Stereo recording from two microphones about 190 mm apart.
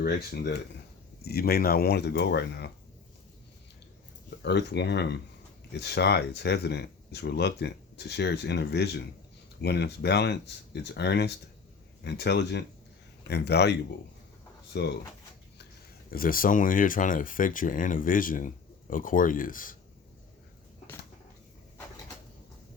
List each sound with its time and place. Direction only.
0.0 s speech: 55° left (ahead or behind)
4.4 s speech: 60° left (ahead or behind)
16.0 s speech: 50° left (ahead or behind)